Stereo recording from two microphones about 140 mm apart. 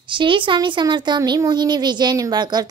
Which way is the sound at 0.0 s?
35° right (ahead or behind).